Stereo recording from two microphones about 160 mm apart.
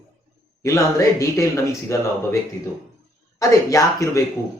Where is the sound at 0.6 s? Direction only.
20° left (ahead or behind).